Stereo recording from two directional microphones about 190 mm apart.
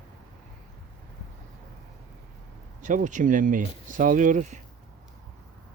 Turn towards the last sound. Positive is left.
turn(degrees=-40)  # may be behind; listen again after turning